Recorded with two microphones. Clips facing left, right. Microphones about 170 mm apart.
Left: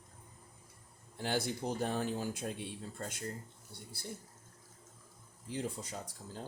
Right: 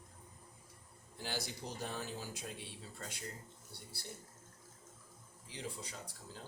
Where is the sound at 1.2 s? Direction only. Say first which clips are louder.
Left 8 dB; 55° left (ahead or behind).